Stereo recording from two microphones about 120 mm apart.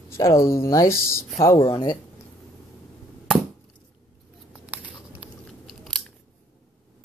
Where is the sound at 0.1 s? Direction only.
25° left (ahead or behind).